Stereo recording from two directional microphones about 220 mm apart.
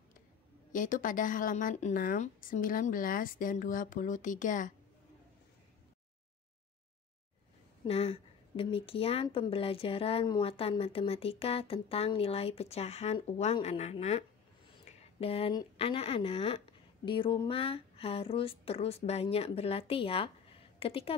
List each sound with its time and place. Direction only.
0.7 s a woman's voice: 35° left (ahead or behind)
7.8 s speech: 25° left (ahead or behind)